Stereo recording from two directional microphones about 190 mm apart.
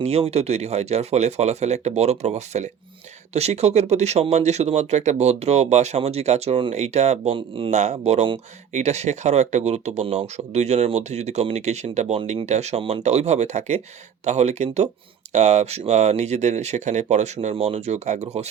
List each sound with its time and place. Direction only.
0.0 s speech: 35° right (ahead or behind)
7.7 s speech: 35° right (ahead or behind)